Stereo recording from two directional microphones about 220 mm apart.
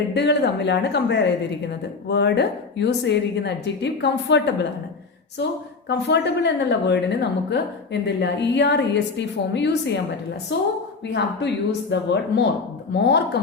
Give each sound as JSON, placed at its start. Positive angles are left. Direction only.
{"t": 0.1, "sound": "a woman's voice", "side_deg": 50}
{"t": 5.9, "sound": "a woman's voice", "side_deg": 50}